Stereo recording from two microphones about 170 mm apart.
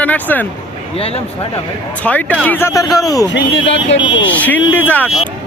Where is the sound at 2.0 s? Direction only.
10° left (ahead or behind).